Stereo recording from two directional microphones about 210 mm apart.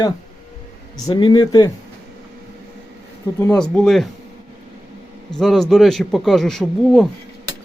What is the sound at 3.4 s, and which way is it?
Speech, 5° left (ahead or behind).